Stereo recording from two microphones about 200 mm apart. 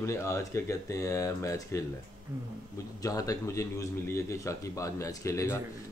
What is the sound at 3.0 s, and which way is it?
Speech, 15° left (ahead or behind).